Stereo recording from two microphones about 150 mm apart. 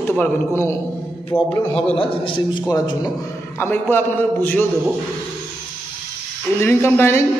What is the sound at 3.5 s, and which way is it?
A man's voice, 15° left (ahead or behind).